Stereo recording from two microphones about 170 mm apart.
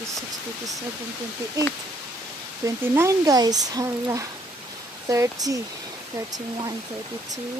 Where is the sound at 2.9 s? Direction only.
20° right (ahead or behind).